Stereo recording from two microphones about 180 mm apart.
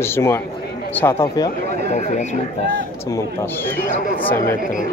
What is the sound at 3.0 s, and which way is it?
Speech, 15° left (ahead or behind).